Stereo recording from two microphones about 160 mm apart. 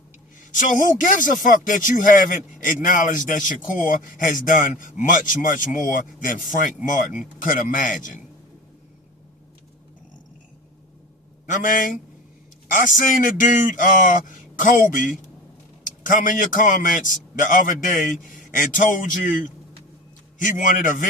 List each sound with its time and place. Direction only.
0.5 s speech: 55° left (ahead or behind)
11.4 s speech: 55° left (ahead or behind)
20.4 s speech: 55° left (ahead or behind)